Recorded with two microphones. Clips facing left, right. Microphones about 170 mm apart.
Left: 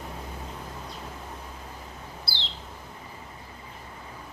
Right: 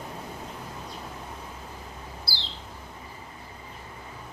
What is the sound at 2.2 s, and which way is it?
Bird, 20° left (ahead or behind).